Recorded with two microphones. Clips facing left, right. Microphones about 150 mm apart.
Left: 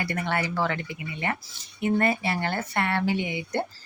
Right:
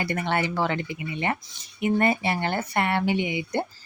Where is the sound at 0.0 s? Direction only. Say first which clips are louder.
Right 2 dB; 25° right (ahead or behind).